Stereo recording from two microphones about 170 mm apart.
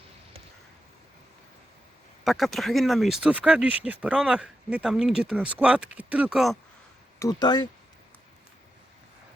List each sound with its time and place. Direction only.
2.2 s speech: centre (ahead or behind)
7.2 s speech: 25° left (ahead or behind)